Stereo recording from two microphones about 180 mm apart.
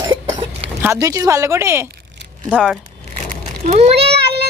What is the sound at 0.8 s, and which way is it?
Speech, 15° right (ahead or behind).